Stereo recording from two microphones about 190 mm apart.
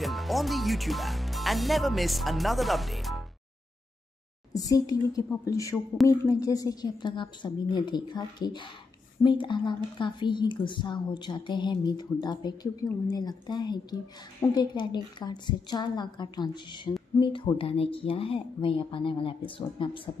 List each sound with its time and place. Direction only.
0.0 s speech: centre (ahead or behind)
4.6 s a woman's voice: 20° left (ahead or behind)